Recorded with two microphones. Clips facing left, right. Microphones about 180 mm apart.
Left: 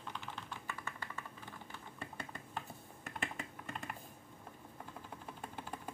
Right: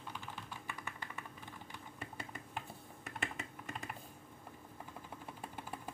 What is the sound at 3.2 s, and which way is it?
Computer keyboard, centre (ahead or behind).